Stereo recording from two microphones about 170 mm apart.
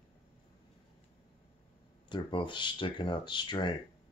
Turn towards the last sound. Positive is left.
turn(degrees=25)  # may be behind; listen again after turning